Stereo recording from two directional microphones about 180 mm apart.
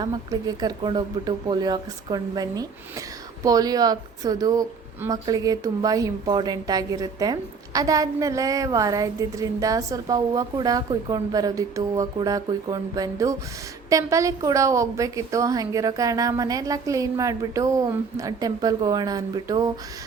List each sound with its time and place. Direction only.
0.0 s speech: 20° right (ahead or behind)